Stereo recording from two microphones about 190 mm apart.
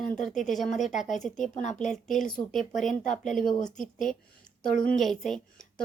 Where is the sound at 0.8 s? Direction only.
40° left (ahead or behind).